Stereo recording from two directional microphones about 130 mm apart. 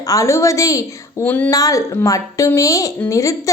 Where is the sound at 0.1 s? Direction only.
25° left (ahead or behind).